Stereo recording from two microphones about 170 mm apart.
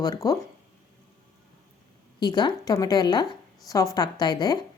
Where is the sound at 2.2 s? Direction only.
25° left (ahead or behind).